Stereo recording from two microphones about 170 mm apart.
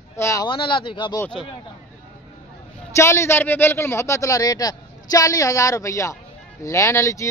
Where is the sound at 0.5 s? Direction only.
30° left (ahead or behind).